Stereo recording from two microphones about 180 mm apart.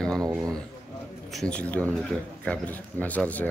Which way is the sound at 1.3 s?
5° left (ahead or behind).